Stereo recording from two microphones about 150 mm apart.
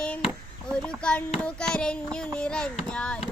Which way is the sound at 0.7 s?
5° left (ahead or behind).